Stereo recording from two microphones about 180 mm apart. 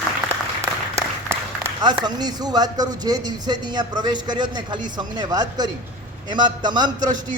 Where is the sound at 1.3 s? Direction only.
20° right (ahead or behind).